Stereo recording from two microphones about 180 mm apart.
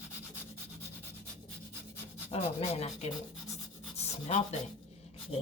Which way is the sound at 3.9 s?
35° left (ahead or behind).